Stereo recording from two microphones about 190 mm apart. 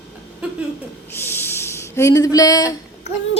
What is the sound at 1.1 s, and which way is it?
Speech, 10° left (ahead or behind).